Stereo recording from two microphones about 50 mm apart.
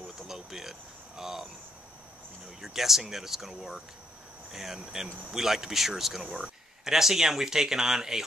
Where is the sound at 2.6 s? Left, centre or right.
Centre.